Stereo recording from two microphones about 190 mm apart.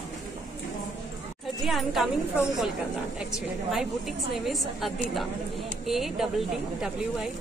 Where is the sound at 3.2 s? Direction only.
Centre (ahead or behind).